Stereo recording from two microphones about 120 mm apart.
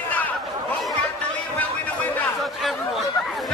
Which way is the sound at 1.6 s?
15° left (ahead or behind).